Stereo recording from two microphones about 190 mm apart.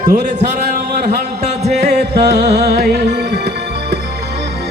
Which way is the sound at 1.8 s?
60° right (ahead or behind).